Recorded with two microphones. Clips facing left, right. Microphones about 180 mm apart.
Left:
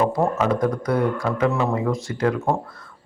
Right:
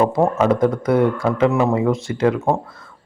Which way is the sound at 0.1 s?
25° right (ahead or behind).